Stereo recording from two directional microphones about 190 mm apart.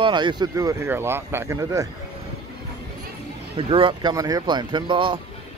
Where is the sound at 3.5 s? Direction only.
25° right (ahead or behind).